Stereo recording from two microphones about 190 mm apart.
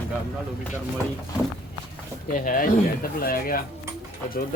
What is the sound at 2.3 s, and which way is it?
Speech, 45° left (ahead or behind).